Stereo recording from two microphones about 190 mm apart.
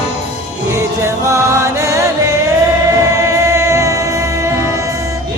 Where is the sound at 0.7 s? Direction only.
15° right (ahead or behind).